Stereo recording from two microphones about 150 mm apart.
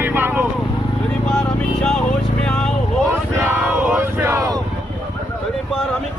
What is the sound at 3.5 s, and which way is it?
Vehicle, 15° right (ahead or behind).